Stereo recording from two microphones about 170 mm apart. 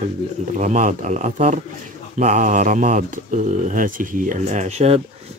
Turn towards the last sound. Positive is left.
turn(degrees=-40)  # may be behind; listen again after turning